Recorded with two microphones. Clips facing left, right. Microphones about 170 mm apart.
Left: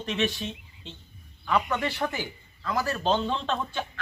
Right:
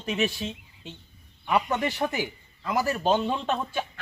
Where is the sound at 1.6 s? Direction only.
25° right (ahead or behind).